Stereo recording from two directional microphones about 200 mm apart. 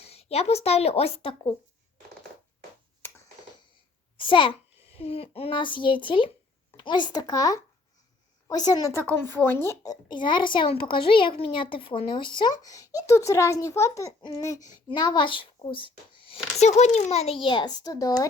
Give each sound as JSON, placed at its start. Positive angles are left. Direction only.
{"t": 0.0, "sound": "speech", "side_deg": 30}
{"t": 4.2, "sound": "a child's voice", "side_deg": 25}